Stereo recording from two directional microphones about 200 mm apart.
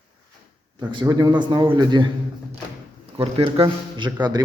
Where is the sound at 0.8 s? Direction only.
20° right (ahead or behind).